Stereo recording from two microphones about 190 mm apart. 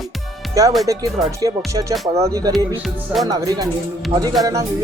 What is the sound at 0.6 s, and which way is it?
A man's voice, 15° right (ahead or behind).